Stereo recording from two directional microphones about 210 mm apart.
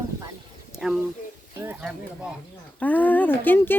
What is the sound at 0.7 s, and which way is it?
Bird, 5° right (ahead or behind).